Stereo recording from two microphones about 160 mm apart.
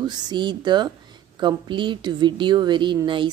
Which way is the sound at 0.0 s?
25° right (ahead or behind).